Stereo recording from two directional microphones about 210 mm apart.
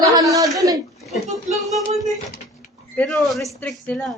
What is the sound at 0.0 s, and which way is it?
Chuckle, 15° right (ahead or behind).